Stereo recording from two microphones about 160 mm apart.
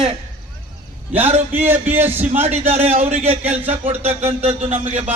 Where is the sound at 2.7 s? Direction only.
40° right (ahead or behind).